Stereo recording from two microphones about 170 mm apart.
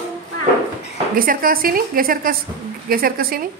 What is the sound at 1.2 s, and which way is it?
A woman's voice, 55° right (ahead or behind).